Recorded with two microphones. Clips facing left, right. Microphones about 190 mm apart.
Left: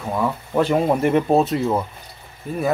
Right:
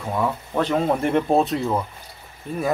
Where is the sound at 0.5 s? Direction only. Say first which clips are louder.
Left 4 dB; 10° left (ahead or behind).